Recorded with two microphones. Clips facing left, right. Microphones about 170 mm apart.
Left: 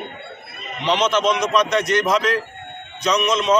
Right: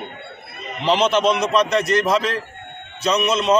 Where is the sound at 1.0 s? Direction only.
30° right (ahead or behind).